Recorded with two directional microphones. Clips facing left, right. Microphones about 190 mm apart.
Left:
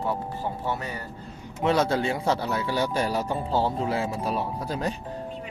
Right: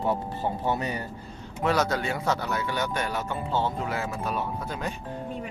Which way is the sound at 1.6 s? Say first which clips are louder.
Left 2 dB; 25° left (ahead or behind).